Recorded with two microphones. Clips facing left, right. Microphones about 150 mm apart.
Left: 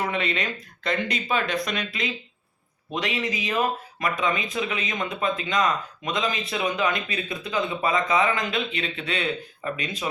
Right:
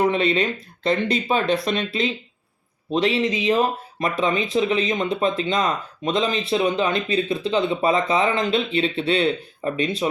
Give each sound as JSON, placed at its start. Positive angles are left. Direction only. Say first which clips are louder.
{"t": 0.0, "sound": "speech", "louder": "right 8 dB", "side_deg": -30}